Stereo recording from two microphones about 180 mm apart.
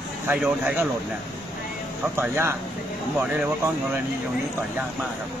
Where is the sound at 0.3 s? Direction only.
5° right (ahead or behind).